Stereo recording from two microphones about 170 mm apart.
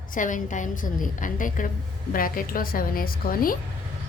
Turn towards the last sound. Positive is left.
turn(degrees=55)  # may be behind; listen again after turning